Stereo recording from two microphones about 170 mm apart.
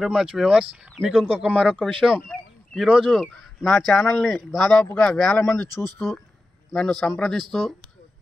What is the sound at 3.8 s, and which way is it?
Speech, centre (ahead or behind).